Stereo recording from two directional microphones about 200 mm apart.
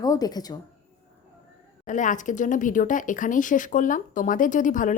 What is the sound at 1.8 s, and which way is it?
Speech, 40° left (ahead or behind).